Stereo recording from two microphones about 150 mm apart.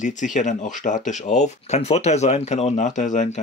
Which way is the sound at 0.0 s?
55° left (ahead or behind).